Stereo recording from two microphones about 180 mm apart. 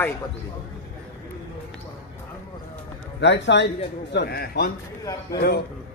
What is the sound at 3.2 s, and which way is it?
A man's voice, 80° left.